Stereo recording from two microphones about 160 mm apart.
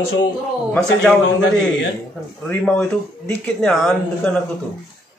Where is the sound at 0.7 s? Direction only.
5° left (ahead or behind).